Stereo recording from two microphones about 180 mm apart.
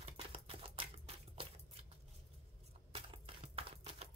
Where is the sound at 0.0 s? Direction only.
30° right (ahead or behind).